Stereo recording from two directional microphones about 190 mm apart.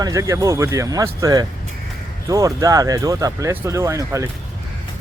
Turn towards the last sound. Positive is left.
turn(degrees=-15)  # may be behind; listen again after turning